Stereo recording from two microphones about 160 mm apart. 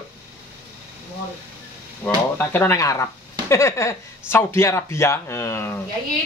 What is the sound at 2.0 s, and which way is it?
Speech, 15° left (ahead or behind).